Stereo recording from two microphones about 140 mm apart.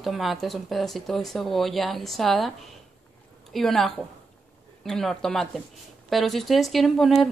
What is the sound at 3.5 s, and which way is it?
Speech, centre (ahead or behind).